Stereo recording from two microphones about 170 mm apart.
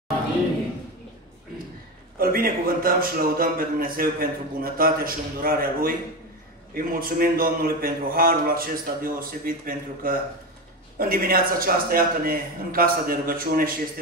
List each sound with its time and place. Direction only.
2.1 s a man's voice: 60° right (ahead or behind)